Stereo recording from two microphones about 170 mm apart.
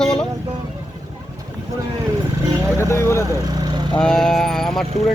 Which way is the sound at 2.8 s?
15° left (ahead or behind).